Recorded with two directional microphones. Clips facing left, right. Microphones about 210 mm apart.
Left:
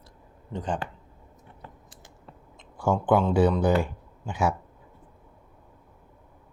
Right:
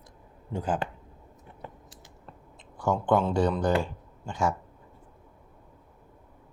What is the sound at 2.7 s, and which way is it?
Speech, 10° left (ahead or behind).